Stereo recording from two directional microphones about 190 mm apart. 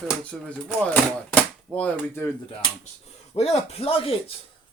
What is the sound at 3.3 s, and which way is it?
Speech, 30° left (ahead or behind).